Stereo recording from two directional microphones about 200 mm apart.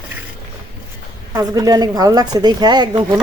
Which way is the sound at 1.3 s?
15° right (ahead or behind).